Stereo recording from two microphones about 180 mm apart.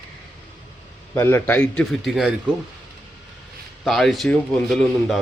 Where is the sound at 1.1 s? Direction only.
15° left (ahead or behind).